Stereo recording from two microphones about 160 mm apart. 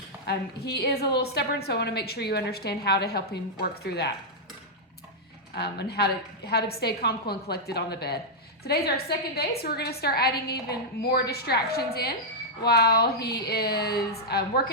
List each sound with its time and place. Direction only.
0.3 s a woman's voice: 90° left
5.5 s a woman's voice: 90° left